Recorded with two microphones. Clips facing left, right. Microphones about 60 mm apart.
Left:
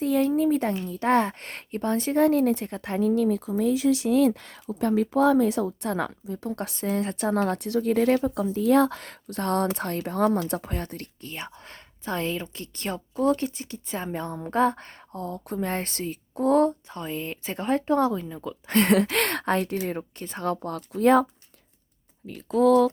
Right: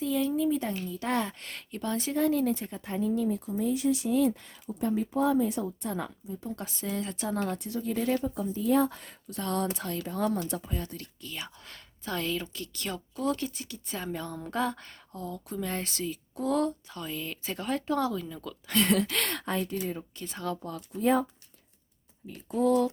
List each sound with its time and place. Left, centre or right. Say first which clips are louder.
0.0 s a woman's voice: left 5 dB; left
6.7 s a woman's voice: left 6 dB; left
18.7 s speech: left 5 dB; left
20.2 s speech: left 6 dB; left